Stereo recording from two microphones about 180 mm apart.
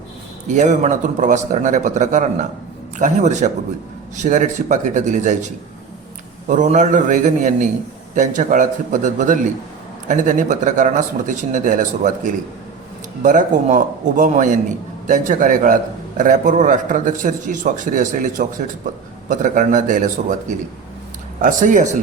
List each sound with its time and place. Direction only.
0.4 s a man's voice: 40° right (ahead or behind)
6.5 s a man's voice: 45° right (ahead or behind)
21.4 s a man's voice: 45° right (ahead or behind)